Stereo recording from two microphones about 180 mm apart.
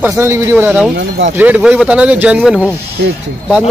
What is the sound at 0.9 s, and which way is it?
Speech, 75° right (ahead or behind).